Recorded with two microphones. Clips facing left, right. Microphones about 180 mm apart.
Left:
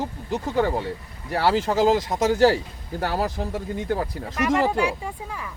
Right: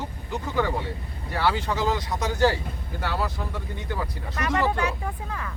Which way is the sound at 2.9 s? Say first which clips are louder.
Left 4 dB; 40° left (ahead or behind).